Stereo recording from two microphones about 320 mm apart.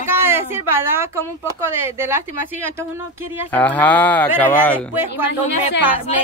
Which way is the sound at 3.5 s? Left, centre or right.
Centre.